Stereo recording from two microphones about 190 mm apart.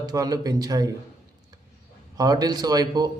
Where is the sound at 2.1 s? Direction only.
20° right (ahead or behind).